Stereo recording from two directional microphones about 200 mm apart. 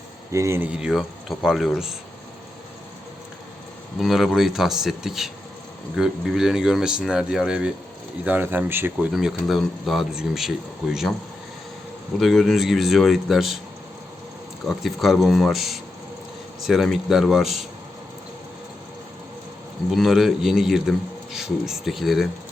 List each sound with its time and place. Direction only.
0.3 s speech: 15° right (ahead or behind)
4.0 s speech: centre (ahead or behind)
12.2 s speech: centre (ahead or behind)
14.7 s speech: centre (ahead or behind)
19.9 s speech: centre (ahead or behind)